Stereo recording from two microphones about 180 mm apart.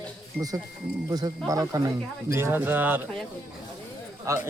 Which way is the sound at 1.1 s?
20° right (ahead or behind).